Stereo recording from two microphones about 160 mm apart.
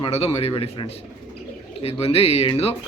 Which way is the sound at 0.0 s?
40° left (ahead or behind).